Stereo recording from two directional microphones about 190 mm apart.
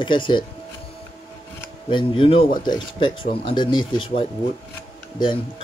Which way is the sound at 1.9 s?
25° left (ahead or behind).